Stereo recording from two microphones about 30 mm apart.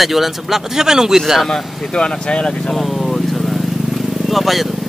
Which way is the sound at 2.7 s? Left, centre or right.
Centre.